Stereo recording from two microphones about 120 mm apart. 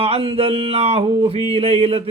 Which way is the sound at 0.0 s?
55° right (ahead or behind).